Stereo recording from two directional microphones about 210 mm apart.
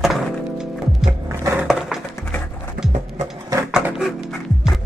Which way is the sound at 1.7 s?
Centre (ahead or behind).